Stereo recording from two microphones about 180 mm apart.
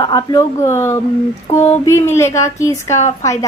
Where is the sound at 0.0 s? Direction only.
20° left (ahead or behind).